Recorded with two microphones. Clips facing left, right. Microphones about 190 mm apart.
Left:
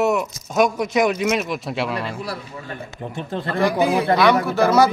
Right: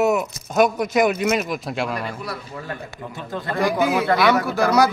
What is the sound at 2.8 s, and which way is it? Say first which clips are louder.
Speech: left 3 dB; 25° left (ahead or behind).